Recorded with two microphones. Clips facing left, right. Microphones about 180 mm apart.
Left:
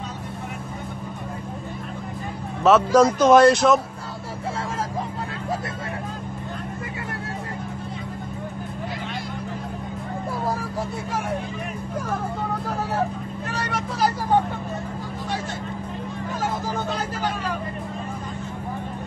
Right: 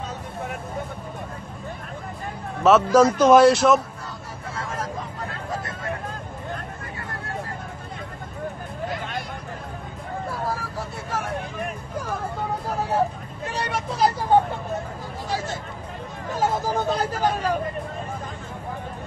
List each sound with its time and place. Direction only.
2.6 s speech: centre (ahead or behind)
13.6 s vehicle: 20° right (ahead or behind)
16.6 s vehicle: 45° right (ahead or behind)